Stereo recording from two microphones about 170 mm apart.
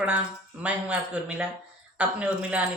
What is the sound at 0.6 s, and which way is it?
Speech, 5° right (ahead or behind).